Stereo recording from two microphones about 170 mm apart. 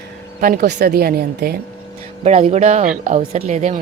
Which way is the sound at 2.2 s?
35° right (ahead or behind).